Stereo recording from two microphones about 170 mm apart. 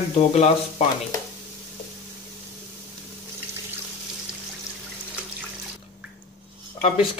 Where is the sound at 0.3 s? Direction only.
40° left (ahead or behind).